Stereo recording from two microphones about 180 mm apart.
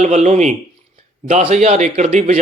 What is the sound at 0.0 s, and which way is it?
Speech, 40° right (ahead or behind).